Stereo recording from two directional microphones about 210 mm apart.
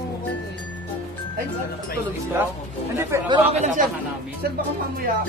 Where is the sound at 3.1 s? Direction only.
15° right (ahead or behind).